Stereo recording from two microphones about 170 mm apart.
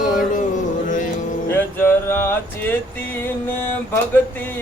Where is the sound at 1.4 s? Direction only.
15° left (ahead or behind).